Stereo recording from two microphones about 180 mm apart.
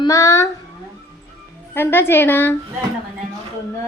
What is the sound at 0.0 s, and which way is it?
Speech, 20° left (ahead or behind).